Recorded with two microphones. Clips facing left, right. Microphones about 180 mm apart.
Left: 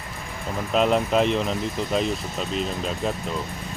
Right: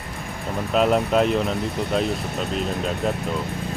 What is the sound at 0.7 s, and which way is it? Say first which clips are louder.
Speech: right 1 dB; centre (ahead or behind).